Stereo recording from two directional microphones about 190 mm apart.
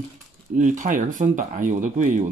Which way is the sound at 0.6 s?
40° right (ahead or behind).